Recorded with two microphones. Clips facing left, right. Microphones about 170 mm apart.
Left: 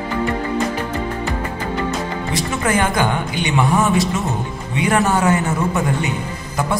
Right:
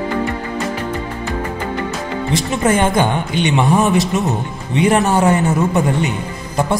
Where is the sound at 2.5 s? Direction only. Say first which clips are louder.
Right 4 dB; 25° right (ahead or behind).